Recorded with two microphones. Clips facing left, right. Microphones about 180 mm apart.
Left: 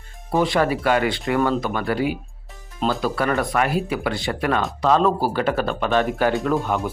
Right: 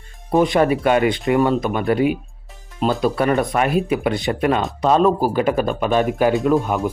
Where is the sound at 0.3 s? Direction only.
20° right (ahead or behind).